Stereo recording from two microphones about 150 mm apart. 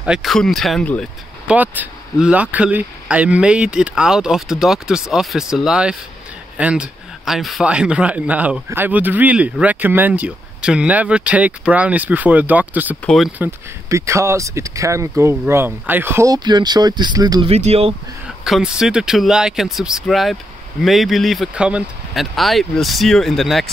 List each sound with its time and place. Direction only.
0.0 s speech: 5° right (ahead or behind)
1.5 s speech: 10° right (ahead or behind)
13.0 s speech: centre (ahead or behind)
13.4 s speech: 20° right (ahead or behind)
16.4 s speech: 30° right (ahead or behind)
17.5 s speech: 45° right (ahead or behind)
18.4 s speech: 5° right (ahead or behind)